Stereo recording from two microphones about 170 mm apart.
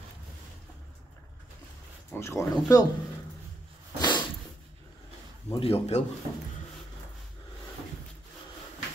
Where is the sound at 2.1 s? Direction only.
15° left (ahead or behind).